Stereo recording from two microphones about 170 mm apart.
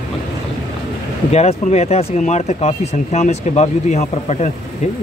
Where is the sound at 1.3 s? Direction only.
40° left (ahead or behind).